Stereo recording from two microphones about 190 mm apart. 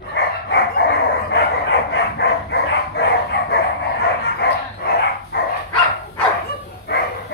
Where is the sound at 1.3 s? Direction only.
60° left (ahead or behind).